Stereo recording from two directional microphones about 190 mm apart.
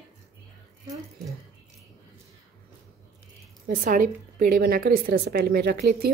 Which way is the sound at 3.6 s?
45° right (ahead or behind).